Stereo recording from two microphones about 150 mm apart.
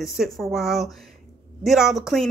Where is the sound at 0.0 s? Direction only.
Centre (ahead or behind).